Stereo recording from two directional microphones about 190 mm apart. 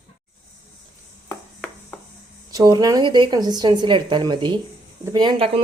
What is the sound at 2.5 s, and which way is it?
A woman's voice, 20° right (ahead or behind).